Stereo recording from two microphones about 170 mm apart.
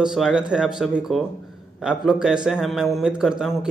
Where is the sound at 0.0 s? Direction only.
5° right (ahead or behind).